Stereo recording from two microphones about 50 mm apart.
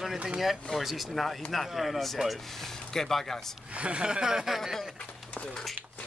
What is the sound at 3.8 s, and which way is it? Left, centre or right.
Speech, right.